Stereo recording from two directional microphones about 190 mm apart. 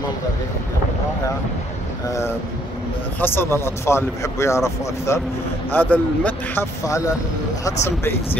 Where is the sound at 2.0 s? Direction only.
15° left (ahead or behind).